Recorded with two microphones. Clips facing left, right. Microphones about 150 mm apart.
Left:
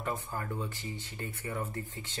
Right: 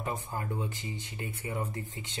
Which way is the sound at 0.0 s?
20° right (ahead or behind).